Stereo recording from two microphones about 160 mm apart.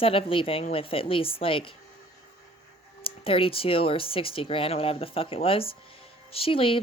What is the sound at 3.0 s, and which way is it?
Speech, 35° left (ahead or behind).